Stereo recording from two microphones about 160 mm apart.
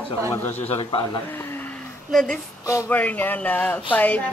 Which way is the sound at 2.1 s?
5° left (ahead or behind).